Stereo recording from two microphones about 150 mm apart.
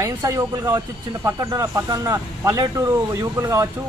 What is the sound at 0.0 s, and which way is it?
Speech, 20° right (ahead or behind).